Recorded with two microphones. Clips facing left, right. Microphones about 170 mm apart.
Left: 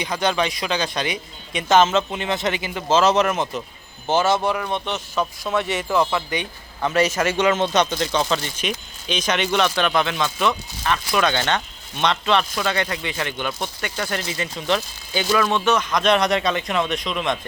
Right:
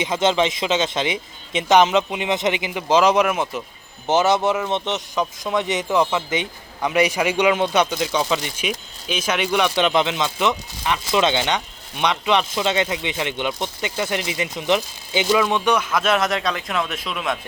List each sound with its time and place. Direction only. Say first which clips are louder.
0.0 s speech: right 3 dB; 20° right (ahead or behind)
4.0 s speech: right 2 dB; 20° right (ahead or behind)